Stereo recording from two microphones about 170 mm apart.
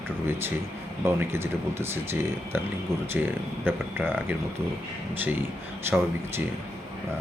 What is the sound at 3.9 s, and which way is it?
Speech, 10° right (ahead or behind).